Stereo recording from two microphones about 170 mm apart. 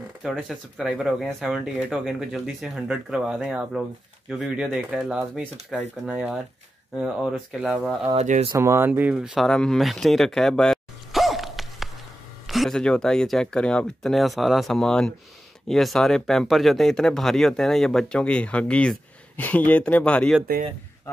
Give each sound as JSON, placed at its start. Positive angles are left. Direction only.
{"t": 0.2, "sound": "speech", "side_deg": 0}
{"t": 8.1, "sound": "speech", "side_deg": -40}
{"t": 8.5, "sound": "speech", "side_deg": -15}